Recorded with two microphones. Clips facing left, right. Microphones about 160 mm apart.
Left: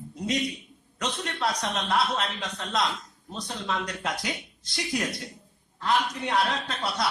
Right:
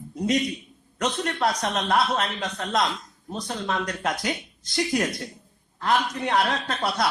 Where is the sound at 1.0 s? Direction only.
50° right (ahead or behind).